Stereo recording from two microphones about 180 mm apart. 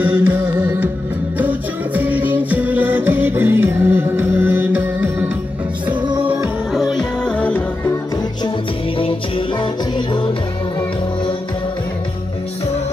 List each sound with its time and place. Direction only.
0.0 s music: 10° right (ahead or behind)
6.2 s music: 10° right (ahead or behind)
6.7 s music: centre (ahead or behind)
9.6 s music: 25° left (ahead or behind)